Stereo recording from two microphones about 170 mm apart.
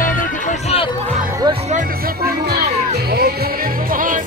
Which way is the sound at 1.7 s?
55° right (ahead or behind).